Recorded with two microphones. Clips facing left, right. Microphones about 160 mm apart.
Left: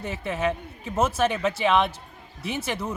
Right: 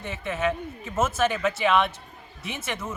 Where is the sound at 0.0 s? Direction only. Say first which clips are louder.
Left 1 dB; 35° left (ahead or behind).